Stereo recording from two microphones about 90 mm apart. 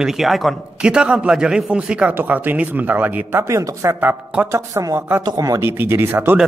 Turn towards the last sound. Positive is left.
turn(degrees=-25)  # may be behind; listen again after turning